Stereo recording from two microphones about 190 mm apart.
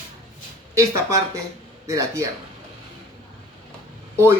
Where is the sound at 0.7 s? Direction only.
15° right (ahead or behind).